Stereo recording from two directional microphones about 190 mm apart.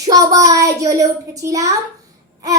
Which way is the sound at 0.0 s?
20° right (ahead or behind).